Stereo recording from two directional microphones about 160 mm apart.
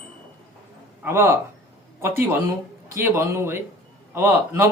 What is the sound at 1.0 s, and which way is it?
A man's voice, 15° right (ahead or behind).